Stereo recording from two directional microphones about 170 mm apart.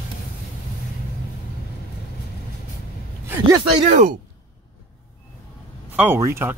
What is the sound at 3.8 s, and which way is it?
Speech, 45° right (ahead or behind).